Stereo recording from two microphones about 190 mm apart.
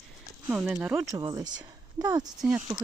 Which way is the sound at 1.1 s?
20° right (ahead or behind).